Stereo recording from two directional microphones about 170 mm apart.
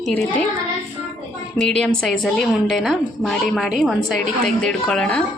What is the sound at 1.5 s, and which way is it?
A woman's voice, 5° left (ahead or behind).